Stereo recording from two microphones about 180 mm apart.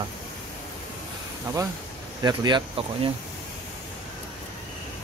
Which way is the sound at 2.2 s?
25° right (ahead or behind).